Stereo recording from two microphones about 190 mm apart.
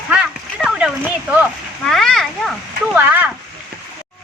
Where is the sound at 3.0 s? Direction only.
10° right (ahead or behind).